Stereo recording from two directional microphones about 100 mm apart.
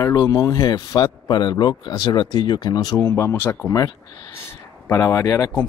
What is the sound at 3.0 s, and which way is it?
Speech, 25° left (ahead or behind).